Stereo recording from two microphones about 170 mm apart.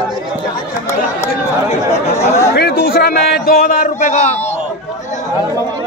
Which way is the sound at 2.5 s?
65° left (ahead or behind).